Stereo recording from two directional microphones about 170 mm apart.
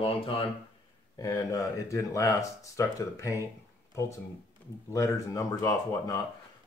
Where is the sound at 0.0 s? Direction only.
35° left (ahead or behind).